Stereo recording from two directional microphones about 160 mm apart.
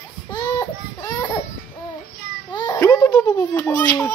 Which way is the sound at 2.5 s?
25° left (ahead or behind).